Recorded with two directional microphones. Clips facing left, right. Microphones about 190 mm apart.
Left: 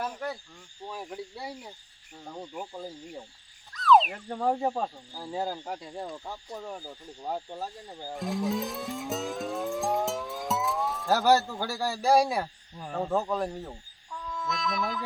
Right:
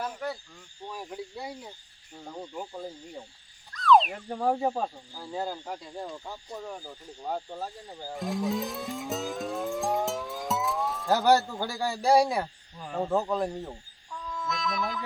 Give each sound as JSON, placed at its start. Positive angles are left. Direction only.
{"t": 0.0, "sound": "speech", "side_deg": 0}
{"t": 5.1, "sound": "speech", "side_deg": 10}
{"t": 8.1, "sound": "music", "side_deg": 0}
{"t": 11.1, "sound": "speech", "side_deg": -15}
{"t": 12.2, "sound": "speech", "side_deg": 5}
{"t": 12.9, "sound": "speech", "side_deg": -5}
{"t": 14.1, "sound": "brass instrument", "side_deg": 0}